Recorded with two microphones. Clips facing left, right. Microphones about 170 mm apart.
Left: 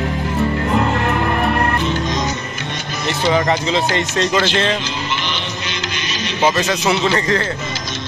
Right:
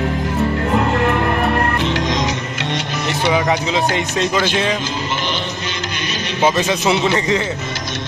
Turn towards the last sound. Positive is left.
turn(degrees=-15)  # may be behind; listen again after turning